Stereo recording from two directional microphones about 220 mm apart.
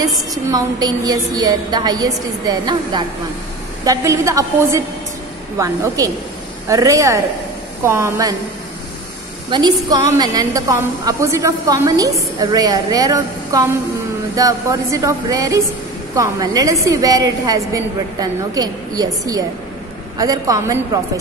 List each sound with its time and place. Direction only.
0.3 s a woman's voice: 15° right (ahead or behind)
9.5 s a woman's voice: 20° right (ahead or behind)
20.2 s a woman's voice: 15° right (ahead or behind)